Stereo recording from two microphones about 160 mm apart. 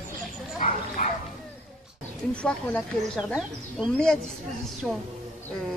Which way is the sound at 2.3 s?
5° left (ahead or behind).